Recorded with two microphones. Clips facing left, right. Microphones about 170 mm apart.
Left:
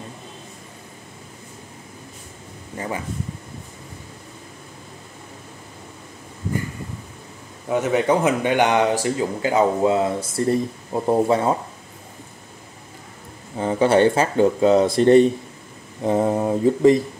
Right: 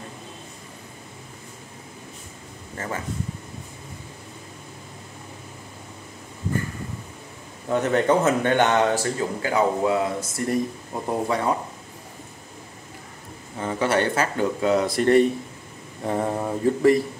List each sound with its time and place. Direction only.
2.8 s speech: 15° left (ahead or behind)
7.7 s speech: 10° left (ahead or behind); by 11.5 s 25° left (ahead or behind)
13.6 s speech: 30° left (ahead or behind)